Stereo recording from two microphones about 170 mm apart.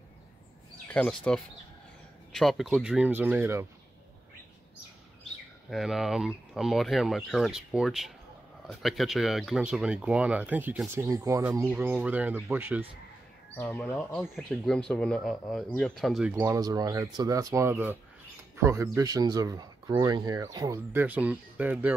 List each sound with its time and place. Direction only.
0.8 s speech: 5° left (ahead or behind); by 3.3 s 10° right (ahead or behind)
5.7 s speech: centre (ahead or behind)
13.6 s speech: 10° left (ahead or behind)
16.3 s speech: 20° right (ahead or behind)